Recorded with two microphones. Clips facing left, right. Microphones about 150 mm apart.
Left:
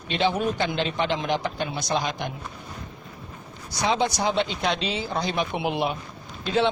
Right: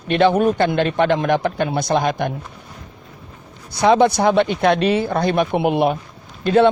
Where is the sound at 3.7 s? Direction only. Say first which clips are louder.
Right 10 dB; 55° right (ahead or behind).